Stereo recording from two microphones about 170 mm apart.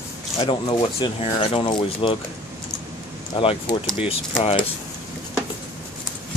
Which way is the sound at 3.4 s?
30° left (ahead or behind).